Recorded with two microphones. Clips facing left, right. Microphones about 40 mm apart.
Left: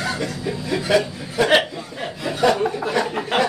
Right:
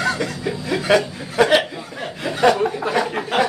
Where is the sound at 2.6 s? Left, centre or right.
Centre.